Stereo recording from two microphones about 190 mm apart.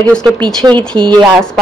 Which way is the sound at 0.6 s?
25° right (ahead or behind).